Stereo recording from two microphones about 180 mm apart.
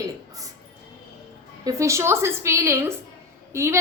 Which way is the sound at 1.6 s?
15° right (ahead or behind).